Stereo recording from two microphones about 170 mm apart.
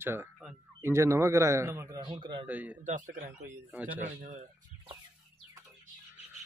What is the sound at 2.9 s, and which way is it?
Speech, 50° right (ahead or behind).